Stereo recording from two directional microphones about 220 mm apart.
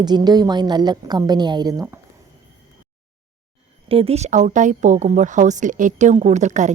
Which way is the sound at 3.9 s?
25° right (ahead or behind).